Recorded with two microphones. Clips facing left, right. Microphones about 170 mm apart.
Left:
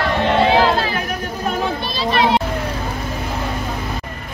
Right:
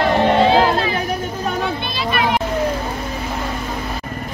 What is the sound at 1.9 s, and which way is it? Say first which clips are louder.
Children playing: left 3 dB; 30° left (ahead or behind).